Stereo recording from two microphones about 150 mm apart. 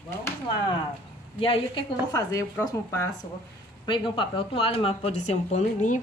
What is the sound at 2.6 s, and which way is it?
Speech, 20° left (ahead or behind).